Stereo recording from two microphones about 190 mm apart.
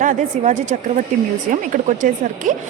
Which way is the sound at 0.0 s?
40° right (ahead or behind).